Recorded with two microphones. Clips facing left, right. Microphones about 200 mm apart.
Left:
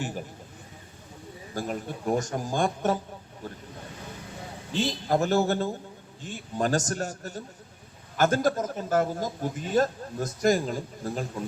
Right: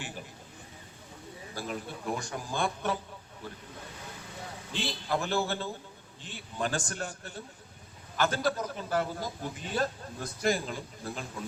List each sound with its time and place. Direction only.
1.5 s a man's voice: 45° left (ahead or behind)
4.7 s a man's voice: 45° left (ahead or behind)